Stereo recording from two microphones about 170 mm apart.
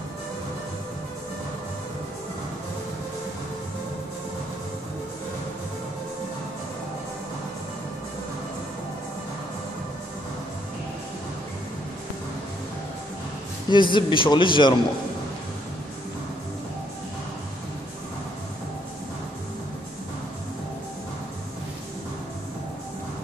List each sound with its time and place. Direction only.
13.7 s a man's voice: 30° left (ahead or behind)